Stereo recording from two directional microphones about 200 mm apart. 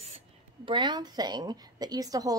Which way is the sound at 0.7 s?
25° right (ahead or behind).